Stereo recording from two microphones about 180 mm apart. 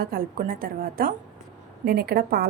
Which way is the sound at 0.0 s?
55° right (ahead or behind).